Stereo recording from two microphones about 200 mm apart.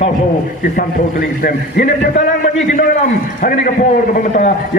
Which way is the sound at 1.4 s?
45° left (ahead or behind).